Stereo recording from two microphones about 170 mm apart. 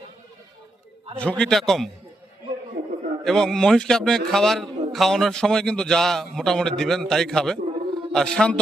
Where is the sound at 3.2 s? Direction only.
5° left (ahead or behind).